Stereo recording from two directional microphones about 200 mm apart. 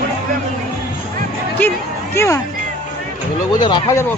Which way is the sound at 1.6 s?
10° left (ahead or behind).